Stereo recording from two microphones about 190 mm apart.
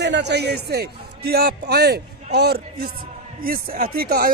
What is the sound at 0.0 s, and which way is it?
Speech, 65° right (ahead or behind).